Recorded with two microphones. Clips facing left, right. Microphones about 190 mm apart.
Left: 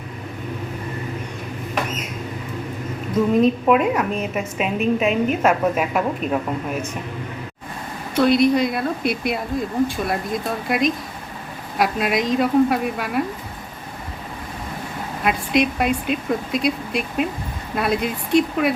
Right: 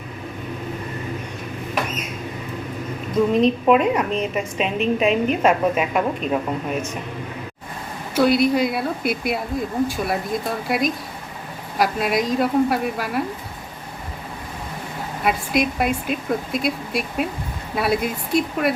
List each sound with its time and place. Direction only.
3.3 s speech: 5° left (ahead or behind)
8.1 s speech: 5° right (ahead or behind)
15.2 s speech: centre (ahead or behind)